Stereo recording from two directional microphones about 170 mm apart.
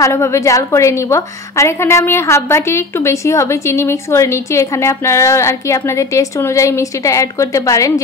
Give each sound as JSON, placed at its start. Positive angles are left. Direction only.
{"t": 0.0, "sound": "a woman's voice", "side_deg": 15}